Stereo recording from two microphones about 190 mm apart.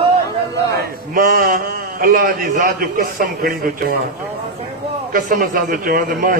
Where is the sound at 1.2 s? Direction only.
50° right (ahead or behind).